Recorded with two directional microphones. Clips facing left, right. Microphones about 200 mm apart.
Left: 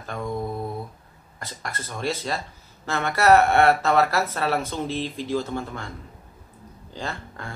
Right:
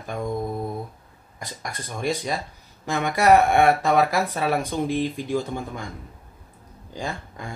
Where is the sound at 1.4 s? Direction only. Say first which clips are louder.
Even; 15° right (ahead or behind).